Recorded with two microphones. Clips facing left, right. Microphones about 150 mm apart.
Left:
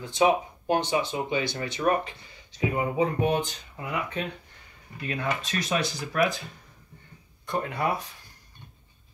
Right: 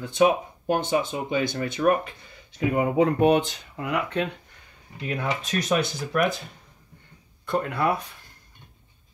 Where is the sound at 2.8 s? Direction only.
70° right (ahead or behind).